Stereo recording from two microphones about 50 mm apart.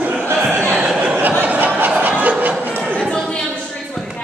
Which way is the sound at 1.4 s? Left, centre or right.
Right.